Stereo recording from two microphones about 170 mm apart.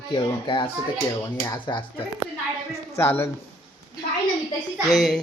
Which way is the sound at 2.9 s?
15° left (ahead or behind).